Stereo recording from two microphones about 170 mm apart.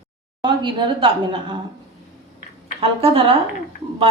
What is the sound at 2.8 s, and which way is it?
Speech, 35° right (ahead or behind).